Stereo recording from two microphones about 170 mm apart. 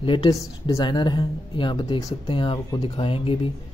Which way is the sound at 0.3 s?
20° left (ahead or behind).